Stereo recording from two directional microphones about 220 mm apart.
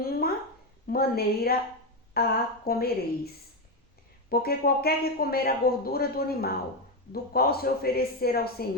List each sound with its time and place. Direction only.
0.0 s a sound: 45° left (ahead or behind)
0.9 s speech: 45° left (ahead or behind)
4.3 s speech: 45° left (ahead or behind)